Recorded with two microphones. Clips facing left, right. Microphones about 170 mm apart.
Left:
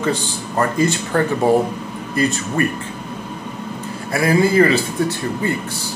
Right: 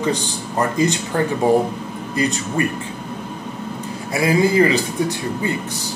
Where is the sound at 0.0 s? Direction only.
15° right (ahead or behind).